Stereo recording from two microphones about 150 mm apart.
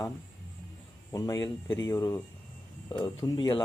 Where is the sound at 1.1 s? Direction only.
25° left (ahead or behind).